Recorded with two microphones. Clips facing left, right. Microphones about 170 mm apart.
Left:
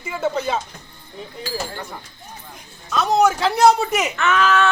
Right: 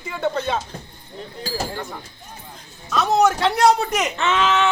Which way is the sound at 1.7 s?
Centre (ahead or behind).